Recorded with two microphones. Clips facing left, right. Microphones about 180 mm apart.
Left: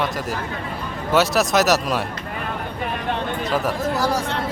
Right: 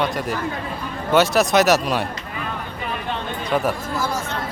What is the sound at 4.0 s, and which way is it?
Speech, 35° left (ahead or behind).